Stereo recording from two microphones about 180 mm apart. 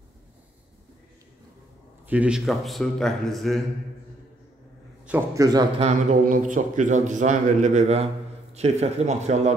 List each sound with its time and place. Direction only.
2.0 s speech: 5° right (ahead or behind)
5.0 s a man's voice: 15° right (ahead or behind)
5.8 s a man's voice: 40° right (ahead or behind)